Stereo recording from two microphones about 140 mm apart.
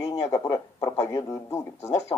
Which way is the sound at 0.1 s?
20° left (ahead or behind).